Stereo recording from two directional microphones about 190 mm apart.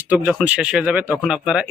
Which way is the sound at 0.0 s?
10° right (ahead or behind).